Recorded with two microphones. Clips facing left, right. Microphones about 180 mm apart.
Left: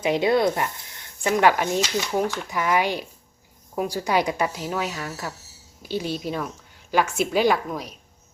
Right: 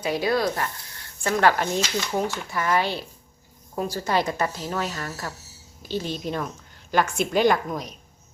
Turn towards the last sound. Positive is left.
turn(degrees=5)  # may be behind; listen again after turning